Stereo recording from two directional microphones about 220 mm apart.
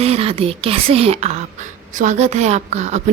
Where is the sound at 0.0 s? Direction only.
25° right (ahead or behind).